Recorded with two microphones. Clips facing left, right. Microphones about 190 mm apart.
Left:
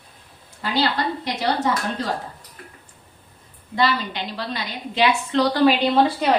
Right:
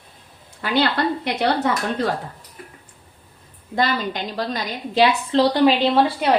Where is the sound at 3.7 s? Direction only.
45° right (ahead or behind).